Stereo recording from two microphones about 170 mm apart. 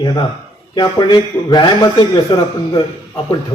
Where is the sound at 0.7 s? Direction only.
25° left (ahead or behind).